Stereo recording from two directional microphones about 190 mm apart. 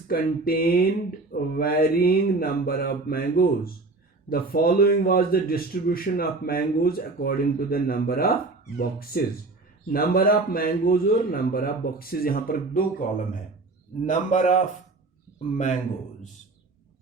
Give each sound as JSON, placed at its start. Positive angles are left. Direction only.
{"t": 0.1, "sound": "a man's voice", "side_deg": 50}